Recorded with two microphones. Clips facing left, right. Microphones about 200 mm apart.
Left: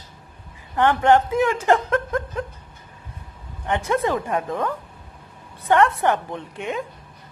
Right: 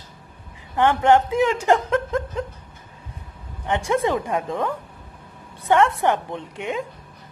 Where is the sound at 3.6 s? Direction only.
20° right (ahead or behind).